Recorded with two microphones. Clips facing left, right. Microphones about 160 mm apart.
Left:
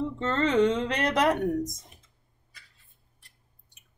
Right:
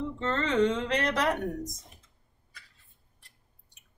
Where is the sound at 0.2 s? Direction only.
20° left (ahead or behind).